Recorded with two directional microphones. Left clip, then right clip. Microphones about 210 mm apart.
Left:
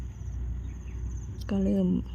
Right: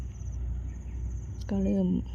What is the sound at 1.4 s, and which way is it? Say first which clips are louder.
Speech: left 1 dB; 5° left (ahead or behind).